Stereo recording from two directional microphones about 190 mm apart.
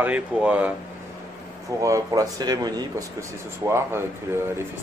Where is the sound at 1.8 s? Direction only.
15° right (ahead or behind).